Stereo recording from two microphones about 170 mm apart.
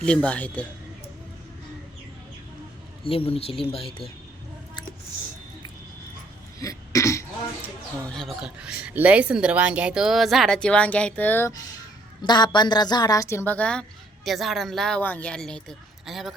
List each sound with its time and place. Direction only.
0.0 s a man's voice: 5° left (ahead or behind)
3.0 s speech: 30° left (ahead or behind)
6.6 s throat clearing: 20° left (ahead or behind)
8.2 s speech: centre (ahead or behind)
12.2 s a woman's voice: 25° left (ahead or behind); by 16.3 s centre (ahead or behind)